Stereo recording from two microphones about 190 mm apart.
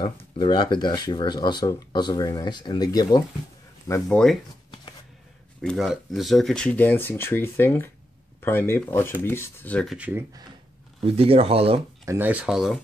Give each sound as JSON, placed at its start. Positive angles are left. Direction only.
{"t": 0.0, "sound": "speech", "side_deg": 25}
{"t": 5.6, "sound": "speech", "side_deg": 0}
{"t": 9.9, "sound": "speech", "side_deg": -10}
{"t": 11.0, "sound": "speech", "side_deg": -30}
{"t": 12.1, "sound": "speech", "side_deg": -10}